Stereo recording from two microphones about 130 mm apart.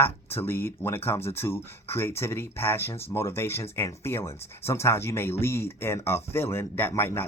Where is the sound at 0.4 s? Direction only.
15° left (ahead or behind).